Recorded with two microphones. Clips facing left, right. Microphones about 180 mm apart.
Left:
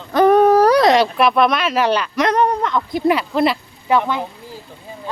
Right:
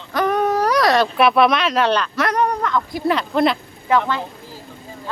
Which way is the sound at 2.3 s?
25° left (ahead or behind).